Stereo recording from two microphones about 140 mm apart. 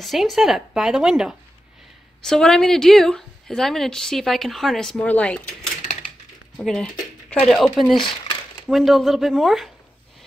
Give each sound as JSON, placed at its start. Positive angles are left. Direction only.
{"t": 0.0, "sound": "speech", "side_deg": 0}
{"t": 6.5, "sound": "speech", "side_deg": 0}